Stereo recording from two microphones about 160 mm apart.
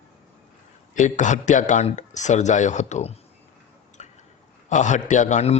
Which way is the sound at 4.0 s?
45° left (ahead or behind).